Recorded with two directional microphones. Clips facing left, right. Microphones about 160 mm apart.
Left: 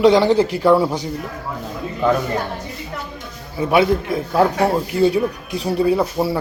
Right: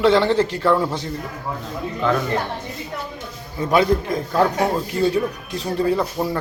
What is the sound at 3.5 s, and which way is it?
A man's voice, 10° left (ahead or behind).